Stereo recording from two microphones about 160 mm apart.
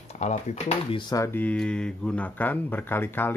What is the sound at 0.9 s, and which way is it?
Speech, 20° left (ahead or behind).